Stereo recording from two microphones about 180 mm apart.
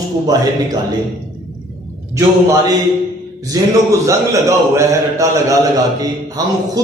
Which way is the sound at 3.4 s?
20° right (ahead or behind).